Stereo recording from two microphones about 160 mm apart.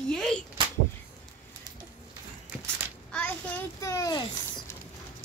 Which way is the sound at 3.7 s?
20° left (ahead or behind).